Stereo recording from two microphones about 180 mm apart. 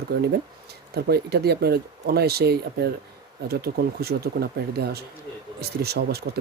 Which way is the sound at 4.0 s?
60° right (ahead or behind).